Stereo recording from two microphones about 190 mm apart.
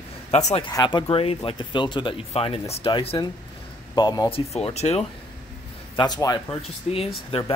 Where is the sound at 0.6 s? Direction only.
25° left (ahead or behind).